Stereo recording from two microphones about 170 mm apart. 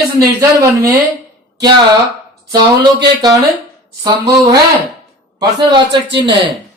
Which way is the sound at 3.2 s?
20° right (ahead or behind).